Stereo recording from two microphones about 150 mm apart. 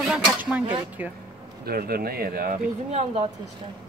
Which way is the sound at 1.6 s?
90° right.